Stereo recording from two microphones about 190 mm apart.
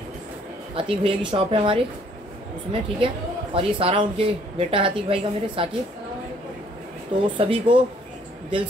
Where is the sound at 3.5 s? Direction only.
25° right (ahead or behind).